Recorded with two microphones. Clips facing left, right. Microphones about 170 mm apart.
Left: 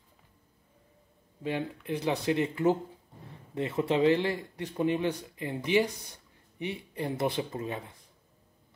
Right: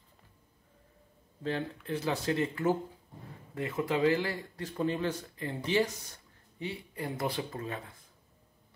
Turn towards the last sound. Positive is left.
turn(degrees=20)  # may be behind; listen again after turning